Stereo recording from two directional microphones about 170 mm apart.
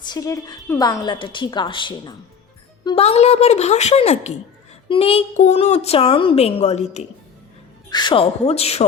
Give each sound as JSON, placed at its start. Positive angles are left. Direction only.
{"t": 0.1, "sound": "a woman's voice", "side_deg": 20}
{"t": 7.9, "sound": "speech", "side_deg": 25}